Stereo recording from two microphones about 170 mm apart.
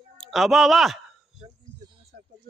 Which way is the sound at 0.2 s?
Centre (ahead or behind).